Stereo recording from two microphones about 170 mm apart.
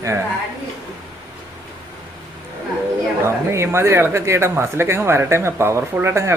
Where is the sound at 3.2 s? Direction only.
15° right (ahead or behind).